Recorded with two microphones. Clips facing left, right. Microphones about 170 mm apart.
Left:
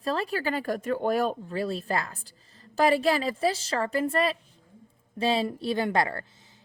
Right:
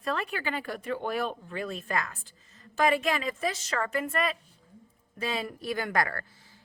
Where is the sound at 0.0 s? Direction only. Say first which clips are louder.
Left 4 dB; 30° left (ahead or behind).